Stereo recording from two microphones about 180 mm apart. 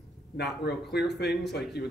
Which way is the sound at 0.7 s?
65° left (ahead or behind).